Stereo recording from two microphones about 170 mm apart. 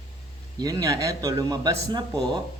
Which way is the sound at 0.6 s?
20° right (ahead or behind).